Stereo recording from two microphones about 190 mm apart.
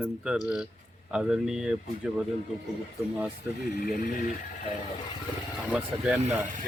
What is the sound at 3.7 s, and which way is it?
Speech, 50° left (ahead or behind).